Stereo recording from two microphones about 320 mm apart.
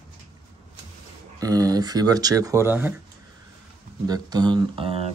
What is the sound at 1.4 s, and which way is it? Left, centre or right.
Speech, centre.